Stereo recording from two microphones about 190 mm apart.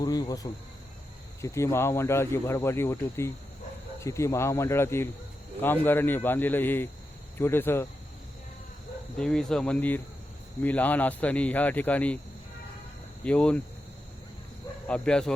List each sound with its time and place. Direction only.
0.0 s speech: 20° left (ahead or behind)
9.1 s speech: 5° left (ahead or behind)
13.2 s speech: 5° left (ahead or behind)
14.8 s speech: 5° left (ahead or behind)